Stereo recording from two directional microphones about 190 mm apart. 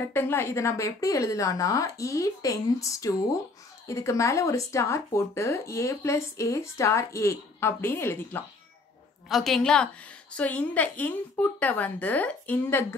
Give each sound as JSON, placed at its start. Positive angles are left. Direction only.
{"t": 0.0, "sound": "a woman's voice", "side_deg": 10}